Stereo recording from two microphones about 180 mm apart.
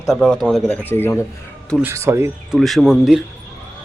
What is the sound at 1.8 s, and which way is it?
Speech, 15° right (ahead or behind).